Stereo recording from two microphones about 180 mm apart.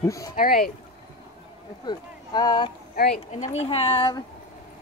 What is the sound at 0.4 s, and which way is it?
Speech, 55° left (ahead or behind).